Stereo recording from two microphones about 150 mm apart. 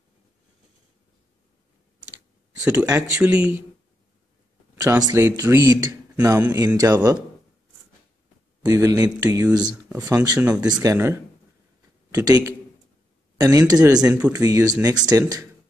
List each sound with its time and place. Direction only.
2.6 s speech: 10° right (ahead or behind)
4.7 s speech: 25° right (ahead or behind)
8.6 s speech: 20° right (ahead or behind)